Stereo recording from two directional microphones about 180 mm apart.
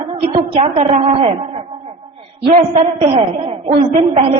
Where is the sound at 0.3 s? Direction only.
30° right (ahead or behind).